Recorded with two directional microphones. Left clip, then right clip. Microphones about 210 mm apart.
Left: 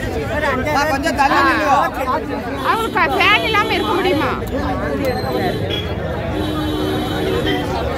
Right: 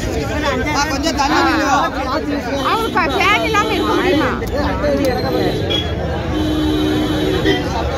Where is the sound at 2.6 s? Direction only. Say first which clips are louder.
Left 1 dB; centre (ahead or behind).